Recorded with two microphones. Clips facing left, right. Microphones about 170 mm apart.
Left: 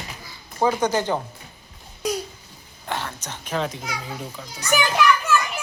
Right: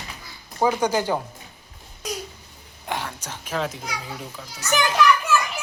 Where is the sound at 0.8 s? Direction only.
10° right (ahead or behind).